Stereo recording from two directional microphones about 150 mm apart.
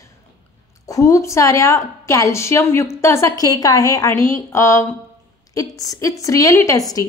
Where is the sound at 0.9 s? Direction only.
20° left (ahead or behind).